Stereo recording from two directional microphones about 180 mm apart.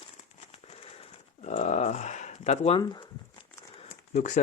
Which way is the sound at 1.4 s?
40° left (ahead or behind).